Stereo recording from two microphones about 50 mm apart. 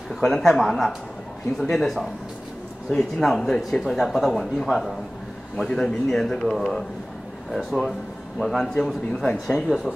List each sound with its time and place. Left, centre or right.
0.1 s speech: centre
5.7 s speech: centre
9.7 s speech: right